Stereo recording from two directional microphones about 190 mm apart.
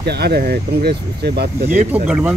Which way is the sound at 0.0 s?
60° right (ahead or behind).